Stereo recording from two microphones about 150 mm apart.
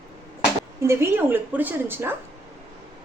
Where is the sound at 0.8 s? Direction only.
15° right (ahead or behind).